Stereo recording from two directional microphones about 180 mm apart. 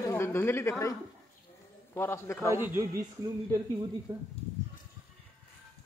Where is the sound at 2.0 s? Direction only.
15° left (ahead or behind).